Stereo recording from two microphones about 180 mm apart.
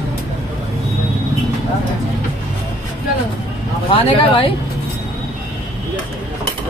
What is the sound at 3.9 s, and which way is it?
Speech, 30° left (ahead or behind).